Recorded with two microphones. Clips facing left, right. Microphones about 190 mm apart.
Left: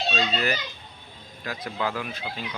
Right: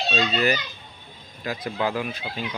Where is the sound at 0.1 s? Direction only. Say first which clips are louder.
Right 5 dB; 15° right (ahead or behind).